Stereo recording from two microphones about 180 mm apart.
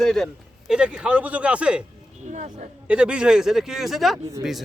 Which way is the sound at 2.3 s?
40° right (ahead or behind).